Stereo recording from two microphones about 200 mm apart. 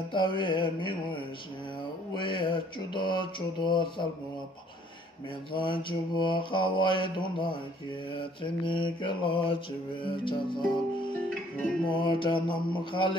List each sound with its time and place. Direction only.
0.1 s mantra: 25° left (ahead or behind)
2.1 s mantra: 25° left (ahead or behind)
5.6 s mantra: 25° left (ahead or behind)
11.9 s mantra: 25° left (ahead or behind)